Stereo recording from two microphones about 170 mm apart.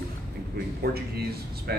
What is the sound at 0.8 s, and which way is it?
Speech, 65° right (ahead or behind).